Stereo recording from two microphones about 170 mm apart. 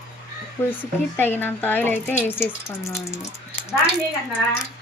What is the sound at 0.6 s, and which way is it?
Speech, 15° left (ahead or behind).